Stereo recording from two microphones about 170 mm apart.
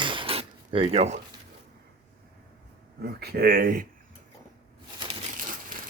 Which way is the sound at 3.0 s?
65° right (ahead or behind).